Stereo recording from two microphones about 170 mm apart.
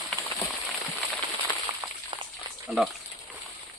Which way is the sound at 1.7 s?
30° right (ahead or behind).